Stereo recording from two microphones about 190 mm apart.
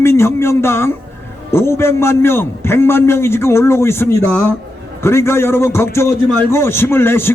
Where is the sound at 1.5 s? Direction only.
15° left (ahead or behind).